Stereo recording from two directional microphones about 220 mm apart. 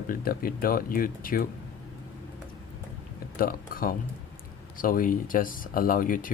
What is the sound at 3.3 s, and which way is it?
Speech, 40° left (ahead or behind).